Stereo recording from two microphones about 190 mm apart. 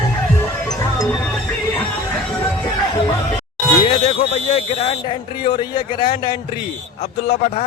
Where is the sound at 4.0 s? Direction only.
35° left (ahead or behind).